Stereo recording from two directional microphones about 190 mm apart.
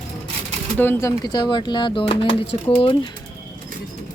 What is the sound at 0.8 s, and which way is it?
Speech, 10° left (ahead or behind).